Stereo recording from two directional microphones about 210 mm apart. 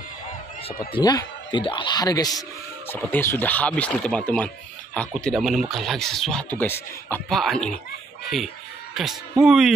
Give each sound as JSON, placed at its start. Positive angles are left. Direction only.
{"t": 0.9, "sound": "a man's voice", "side_deg": 20}
{"t": 8.9, "sound": "speech", "side_deg": 0}